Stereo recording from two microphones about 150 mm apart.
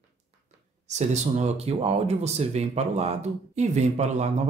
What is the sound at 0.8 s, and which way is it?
Speech, 50° right (ahead or behind).